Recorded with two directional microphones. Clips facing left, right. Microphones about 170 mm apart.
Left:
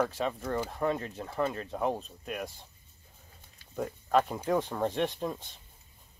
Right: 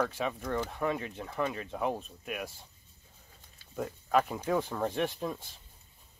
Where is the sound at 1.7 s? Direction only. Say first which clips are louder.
Left 2 dB; centre (ahead or behind).